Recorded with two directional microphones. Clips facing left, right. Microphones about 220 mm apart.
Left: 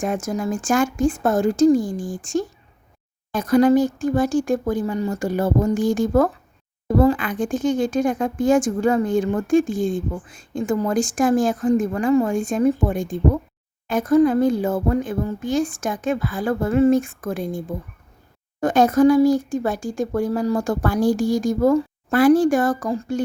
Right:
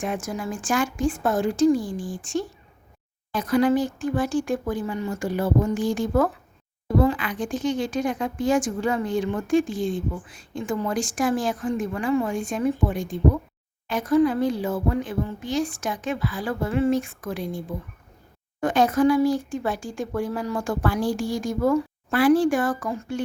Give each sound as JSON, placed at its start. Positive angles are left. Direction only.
{"t": 0.0, "sound": "speech", "side_deg": 45}
{"t": 18.6, "sound": "speech", "side_deg": 45}